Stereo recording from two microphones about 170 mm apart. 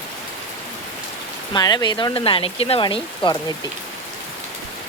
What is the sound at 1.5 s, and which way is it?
Speech, 25° left (ahead or behind).